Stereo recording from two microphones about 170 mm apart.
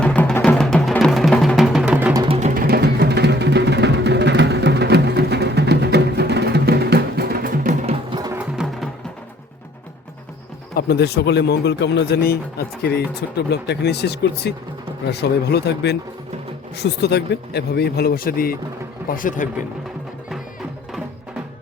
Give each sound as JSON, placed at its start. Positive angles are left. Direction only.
{"t": 0.0, "sound": "music", "side_deg": 5}
{"t": 2.1, "sound": "music", "side_deg": -35}
{"t": 2.6, "sound": "music", "side_deg": -65}
{"t": 7.9, "sound": "music", "side_deg": -25}
{"t": 8.3, "sound": "music", "side_deg": -5}
{"t": 10.8, "sound": "speech", "side_deg": 70}